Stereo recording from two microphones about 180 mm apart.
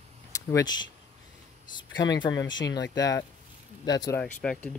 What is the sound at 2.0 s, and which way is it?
Speech, 25° left (ahead or behind).